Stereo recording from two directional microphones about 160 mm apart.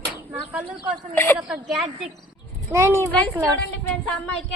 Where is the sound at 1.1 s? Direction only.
15° left (ahead or behind).